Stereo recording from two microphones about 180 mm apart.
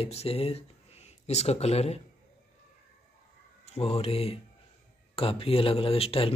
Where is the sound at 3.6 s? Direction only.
35° left (ahead or behind).